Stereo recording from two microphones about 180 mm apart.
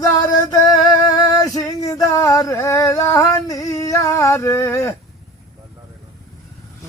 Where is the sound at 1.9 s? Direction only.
20° left (ahead or behind).